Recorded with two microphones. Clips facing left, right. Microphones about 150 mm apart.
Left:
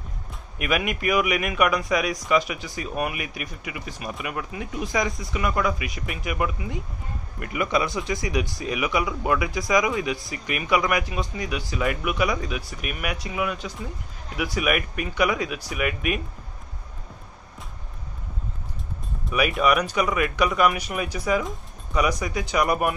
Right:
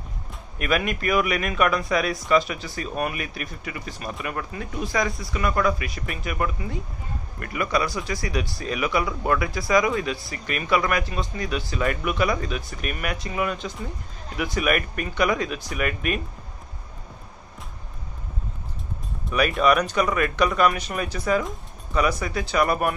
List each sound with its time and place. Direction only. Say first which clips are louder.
0.6 s speech: right 1 dB; 15° left (ahead or behind)
19.5 s speech: right 2 dB; 5° left (ahead or behind)